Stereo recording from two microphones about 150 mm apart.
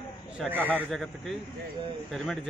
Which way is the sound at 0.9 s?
Centre (ahead or behind).